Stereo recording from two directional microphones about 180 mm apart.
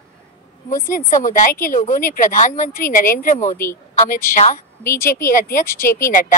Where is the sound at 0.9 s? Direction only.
45° left (ahead or behind).